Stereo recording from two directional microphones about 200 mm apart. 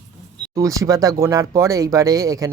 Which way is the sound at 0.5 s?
15° right (ahead or behind).